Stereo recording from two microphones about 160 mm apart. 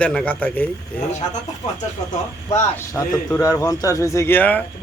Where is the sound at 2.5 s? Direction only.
20° left (ahead or behind).